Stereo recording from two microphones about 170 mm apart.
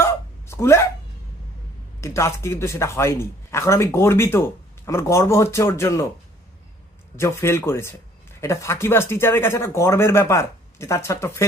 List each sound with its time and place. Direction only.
0.0 s hiccup: 15° left (ahead or behind)
2.0 s speech: 15° left (ahead or behind)
7.2 s speech: 15° left (ahead or behind)